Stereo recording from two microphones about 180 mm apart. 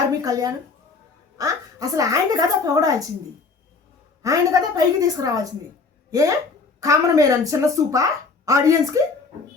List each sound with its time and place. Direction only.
0.2 s a woman's voice: 20° right (ahead or behind)
4.2 s a woman's voice: 20° right (ahead or behind)